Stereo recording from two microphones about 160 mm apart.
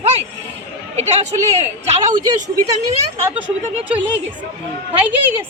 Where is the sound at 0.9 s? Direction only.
45° right (ahead or behind).